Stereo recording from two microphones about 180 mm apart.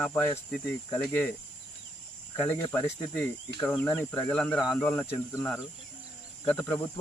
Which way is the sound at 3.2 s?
10° left (ahead or behind).